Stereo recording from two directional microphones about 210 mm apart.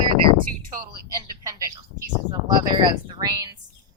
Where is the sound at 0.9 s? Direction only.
15° right (ahead or behind).